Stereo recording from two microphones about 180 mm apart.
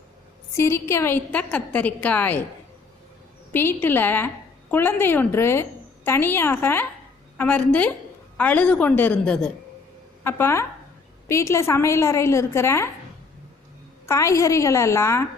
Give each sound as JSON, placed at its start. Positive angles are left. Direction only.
{"t": 0.5, "sound": "a woman's voice", "side_deg": 15}
{"t": 3.5, "sound": "a woman's voice", "side_deg": 10}
{"t": 14.1, "sound": "a woman's voice", "side_deg": 15}